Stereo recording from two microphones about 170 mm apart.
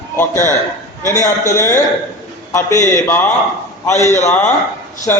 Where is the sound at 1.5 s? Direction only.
15° left (ahead or behind).